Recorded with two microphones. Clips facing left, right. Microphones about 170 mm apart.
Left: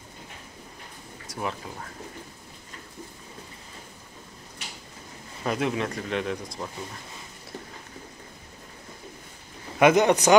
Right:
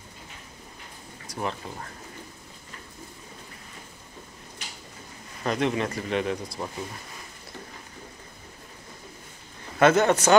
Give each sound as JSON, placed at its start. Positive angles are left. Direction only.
{"t": 1.2, "sound": "speech", "side_deg": 0}
{"t": 5.4, "sound": "speech", "side_deg": 5}
{"t": 9.8, "sound": "a man's voice", "side_deg": 15}